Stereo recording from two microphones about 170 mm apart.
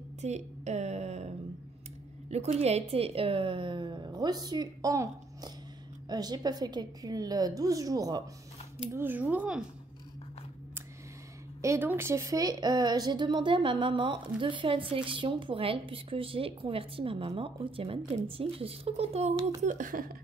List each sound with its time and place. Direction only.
0.2 s a sound: 40° right (ahead or behind)
2.2 s speech: 40° right (ahead or behind); by 9.7 s 5° right (ahead or behind)
11.6 s speech: 15° right (ahead or behind); by 19.3 s 35° right (ahead or behind)
19.6 s speech: 50° right (ahead or behind)